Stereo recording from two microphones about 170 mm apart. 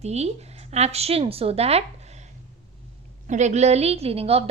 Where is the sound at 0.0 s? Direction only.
40° right (ahead or behind).